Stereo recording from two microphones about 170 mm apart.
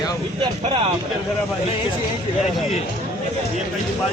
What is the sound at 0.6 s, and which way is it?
Speech, 35° right (ahead or behind).